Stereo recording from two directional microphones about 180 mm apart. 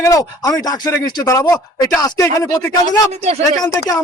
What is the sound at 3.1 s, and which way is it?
Speech, 35° right (ahead or behind).